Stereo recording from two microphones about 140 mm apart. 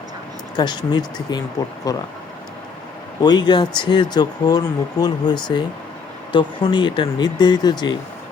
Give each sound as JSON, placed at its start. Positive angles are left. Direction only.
{"t": 0.5, "sound": "speech", "side_deg": 30}
{"t": 3.2, "sound": "speech", "side_deg": 30}